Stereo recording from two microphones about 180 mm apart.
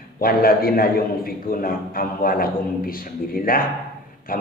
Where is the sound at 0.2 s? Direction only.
55° left (ahead or behind).